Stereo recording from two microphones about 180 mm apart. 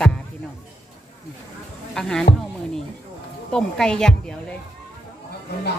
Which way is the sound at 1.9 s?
5° left (ahead or behind).